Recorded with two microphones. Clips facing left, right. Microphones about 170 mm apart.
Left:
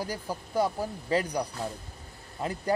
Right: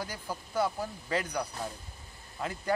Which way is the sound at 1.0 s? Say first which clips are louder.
Left 5 dB; 35° left (ahead or behind).